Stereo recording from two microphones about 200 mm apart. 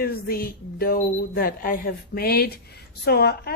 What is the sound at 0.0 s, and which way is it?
A woman's voice, 50° left (ahead or behind).